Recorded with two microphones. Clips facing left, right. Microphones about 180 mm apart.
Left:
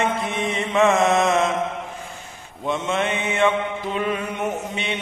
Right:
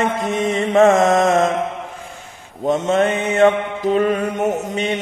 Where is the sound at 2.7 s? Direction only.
40° right (ahead or behind).